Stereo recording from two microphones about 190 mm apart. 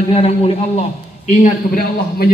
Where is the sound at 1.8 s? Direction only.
55° left (ahead or behind).